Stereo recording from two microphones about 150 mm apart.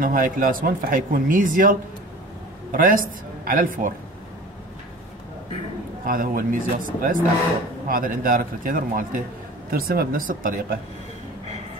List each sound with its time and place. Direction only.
0.0 s speech: 65° right (ahead or behind)
6.0 s speech: 70° right (ahead or behind)
9.7 s speech: 85° right